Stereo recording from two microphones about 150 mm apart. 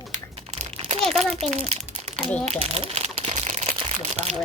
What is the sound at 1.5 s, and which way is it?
Crumpling, 50° right (ahead or behind).